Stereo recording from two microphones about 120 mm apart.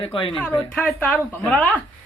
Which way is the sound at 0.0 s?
50° left (ahead or behind).